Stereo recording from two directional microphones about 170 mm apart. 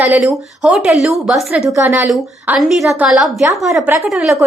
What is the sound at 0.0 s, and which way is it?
Speech, 10° right (ahead or behind).